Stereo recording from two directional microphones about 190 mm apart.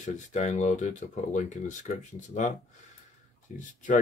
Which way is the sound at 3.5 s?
40° left (ahead or behind).